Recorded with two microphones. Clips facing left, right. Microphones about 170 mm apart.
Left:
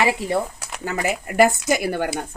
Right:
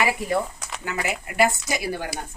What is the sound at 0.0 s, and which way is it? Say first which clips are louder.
Speech: left 3 dB; 25° left (ahead or behind).